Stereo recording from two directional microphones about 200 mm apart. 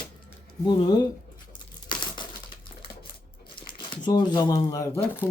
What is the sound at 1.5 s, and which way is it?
Tearing, 25° left (ahead or behind).